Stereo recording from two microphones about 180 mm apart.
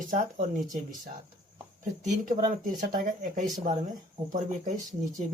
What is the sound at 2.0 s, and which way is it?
Speech, 45° right (ahead or behind).